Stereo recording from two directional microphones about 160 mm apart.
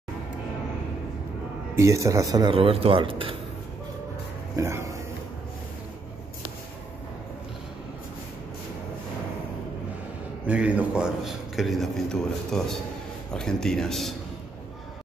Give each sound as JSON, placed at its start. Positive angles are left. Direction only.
{"t": 1.8, "sound": "speech", "side_deg": -20}
{"t": 4.6, "sound": "speech", "side_deg": -20}
{"t": 10.4, "sound": "speech", "side_deg": -10}